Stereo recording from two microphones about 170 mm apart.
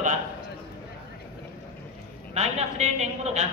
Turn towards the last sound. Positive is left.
turn(degrees=-40)  # may be behind; listen again after turning